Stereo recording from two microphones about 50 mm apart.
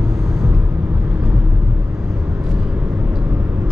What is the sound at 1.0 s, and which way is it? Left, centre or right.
Vehicle, right.